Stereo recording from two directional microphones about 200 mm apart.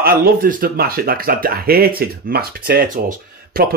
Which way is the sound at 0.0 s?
50° right (ahead or behind).